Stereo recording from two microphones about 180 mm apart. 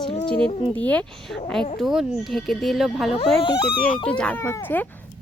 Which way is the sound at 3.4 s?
20° left (ahead or behind).